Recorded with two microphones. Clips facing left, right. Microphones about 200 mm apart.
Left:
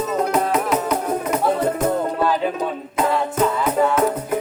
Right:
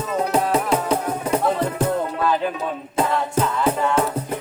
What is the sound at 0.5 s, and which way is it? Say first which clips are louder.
Music: even; 30° right (ahead or behind).